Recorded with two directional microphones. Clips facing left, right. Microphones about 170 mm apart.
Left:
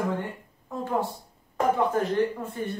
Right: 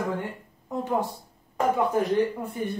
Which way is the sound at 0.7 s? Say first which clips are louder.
Right 1 dB; 20° right (ahead or behind).